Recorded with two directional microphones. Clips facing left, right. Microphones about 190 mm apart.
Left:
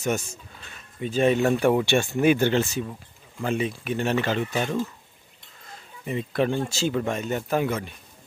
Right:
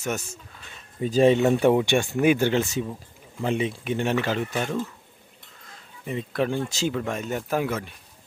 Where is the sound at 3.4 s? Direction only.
20° right (ahead or behind).